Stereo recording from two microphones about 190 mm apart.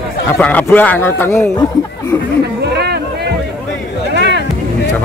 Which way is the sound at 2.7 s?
60° right (ahead or behind).